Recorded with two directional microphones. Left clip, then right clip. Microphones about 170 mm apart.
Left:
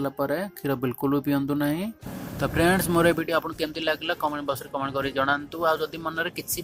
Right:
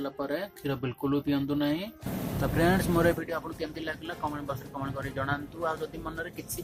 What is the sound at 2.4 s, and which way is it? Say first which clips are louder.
Speech: left 4 dB; 30° left (ahead or behind).